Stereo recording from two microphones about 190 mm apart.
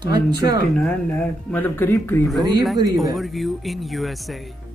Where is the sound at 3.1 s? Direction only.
Centre (ahead or behind).